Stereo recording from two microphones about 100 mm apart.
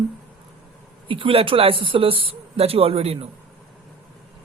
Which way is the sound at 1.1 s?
65° right (ahead or behind).